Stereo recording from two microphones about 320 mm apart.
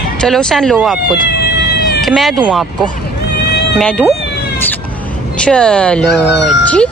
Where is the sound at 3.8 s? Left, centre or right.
Centre.